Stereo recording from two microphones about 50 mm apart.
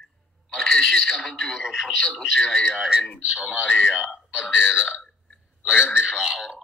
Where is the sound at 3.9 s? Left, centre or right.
Centre.